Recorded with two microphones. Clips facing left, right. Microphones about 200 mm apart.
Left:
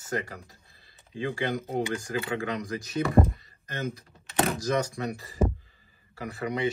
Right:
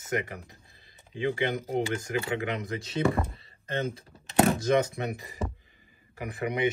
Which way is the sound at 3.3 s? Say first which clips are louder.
Right 5 dB; 30° right (ahead or behind).